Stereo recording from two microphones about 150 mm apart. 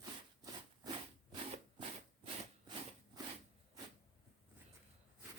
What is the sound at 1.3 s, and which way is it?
Rub, 40° right (ahead or behind).